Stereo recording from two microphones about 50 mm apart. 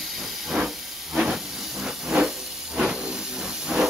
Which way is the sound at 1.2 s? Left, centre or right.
Centre.